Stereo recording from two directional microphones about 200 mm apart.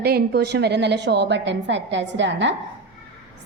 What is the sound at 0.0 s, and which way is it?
A woman's voice, 55° right (ahead or behind).